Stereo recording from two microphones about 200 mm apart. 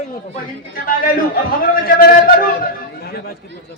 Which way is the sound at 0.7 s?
45° left (ahead or behind).